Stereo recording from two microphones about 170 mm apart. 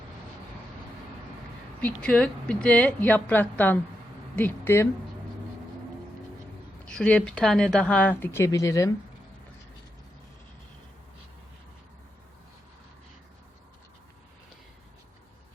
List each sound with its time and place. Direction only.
1.8 s speech: 5° left (ahead or behind)
6.8 s speech: 5° left (ahead or behind)